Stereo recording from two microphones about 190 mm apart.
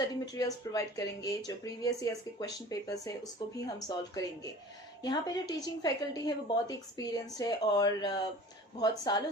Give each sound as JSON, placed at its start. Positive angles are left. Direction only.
{"t": 0.0, "sound": "a woman's voice", "side_deg": 20}